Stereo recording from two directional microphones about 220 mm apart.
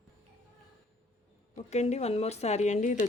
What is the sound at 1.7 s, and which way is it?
Speech, 30° left (ahead or behind).